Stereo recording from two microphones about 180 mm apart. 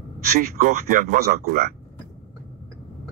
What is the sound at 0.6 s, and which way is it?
Speech, 50° right (ahead or behind).